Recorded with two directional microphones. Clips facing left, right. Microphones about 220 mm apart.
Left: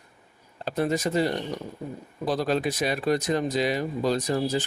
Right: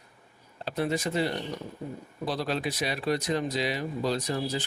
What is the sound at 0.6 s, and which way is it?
Speech, 45° left (ahead or behind).